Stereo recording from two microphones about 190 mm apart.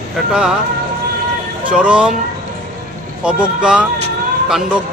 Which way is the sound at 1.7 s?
5° right (ahead or behind).